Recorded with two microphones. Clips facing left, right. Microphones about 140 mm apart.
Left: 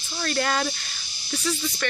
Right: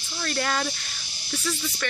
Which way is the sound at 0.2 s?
Centre (ahead or behind).